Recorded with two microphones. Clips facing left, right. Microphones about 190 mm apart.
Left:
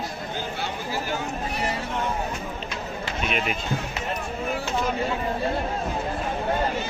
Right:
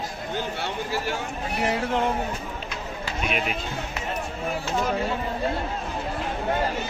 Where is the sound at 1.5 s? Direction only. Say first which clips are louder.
Right 6 dB; 60° right (ahead or behind).